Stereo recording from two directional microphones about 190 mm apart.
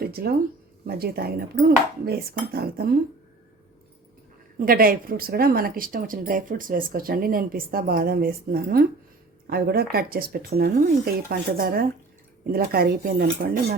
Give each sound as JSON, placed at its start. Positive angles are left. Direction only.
{"t": 0.0, "sound": "a sound", "side_deg": -55}
{"t": 0.9, "sound": "speech", "side_deg": -55}
{"t": 4.5, "sound": "speech", "side_deg": -50}